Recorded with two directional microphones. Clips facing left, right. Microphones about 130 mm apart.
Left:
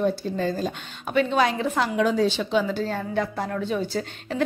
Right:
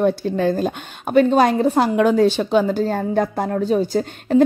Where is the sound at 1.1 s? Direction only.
40° right (ahead or behind).